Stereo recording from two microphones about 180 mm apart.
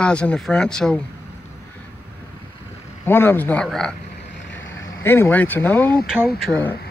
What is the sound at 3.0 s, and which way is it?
Speech, 10° left (ahead or behind).